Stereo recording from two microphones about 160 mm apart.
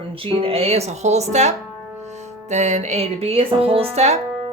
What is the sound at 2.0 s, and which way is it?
Music, 45° right (ahead or behind).